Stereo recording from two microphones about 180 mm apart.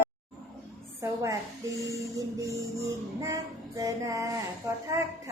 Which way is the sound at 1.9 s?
15° right (ahead or behind).